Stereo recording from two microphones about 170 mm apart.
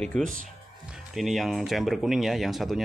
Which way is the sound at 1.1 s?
Centre (ahead or behind).